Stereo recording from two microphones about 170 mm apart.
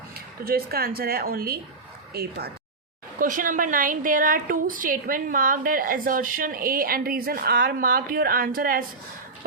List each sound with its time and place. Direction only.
0.4 s a woman's voice: 60° right (ahead or behind)
3.2 s a woman's voice: 50° right (ahead or behind)